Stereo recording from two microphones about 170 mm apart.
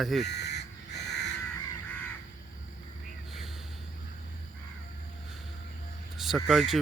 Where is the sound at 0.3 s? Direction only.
80° left.